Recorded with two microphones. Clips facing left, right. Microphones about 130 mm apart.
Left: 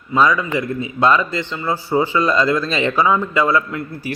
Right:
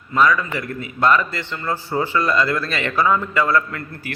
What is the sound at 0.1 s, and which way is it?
A man's voice, 15° left (ahead or behind).